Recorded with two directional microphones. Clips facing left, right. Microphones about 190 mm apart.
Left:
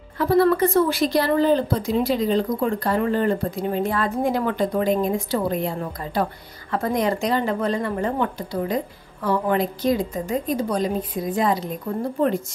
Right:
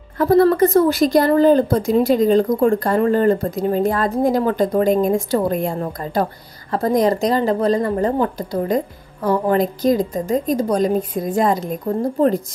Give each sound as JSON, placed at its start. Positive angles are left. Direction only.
{"t": 0.2, "sound": "speech", "side_deg": -45}